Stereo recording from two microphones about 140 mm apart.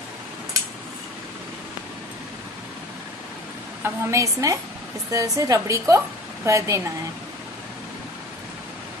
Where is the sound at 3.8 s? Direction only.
20° right (ahead or behind).